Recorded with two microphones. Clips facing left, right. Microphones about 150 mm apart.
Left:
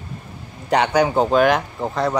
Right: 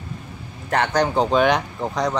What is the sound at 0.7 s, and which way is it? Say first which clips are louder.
Speech: left 3 dB; 15° left (ahead or behind).